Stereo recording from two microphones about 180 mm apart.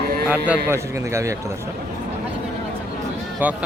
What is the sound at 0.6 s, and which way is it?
Speech, 15° right (ahead or behind).